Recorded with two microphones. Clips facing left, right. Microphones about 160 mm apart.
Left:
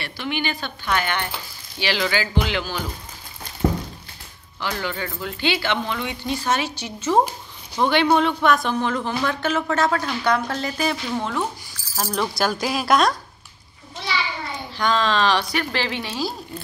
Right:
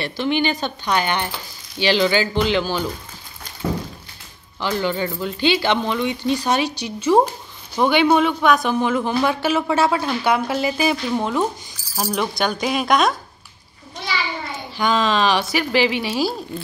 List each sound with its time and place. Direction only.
0.0 s speech: 25° right (ahead or behind)
4.6 s speech: 25° right (ahead or behind)
12.4 s speech: centre (ahead or behind)
14.1 s a sound: centre (ahead or behind)
14.8 s speech: 5° right (ahead or behind)